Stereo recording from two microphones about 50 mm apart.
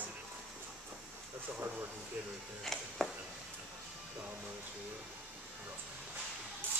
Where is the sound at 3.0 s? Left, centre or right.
Centre.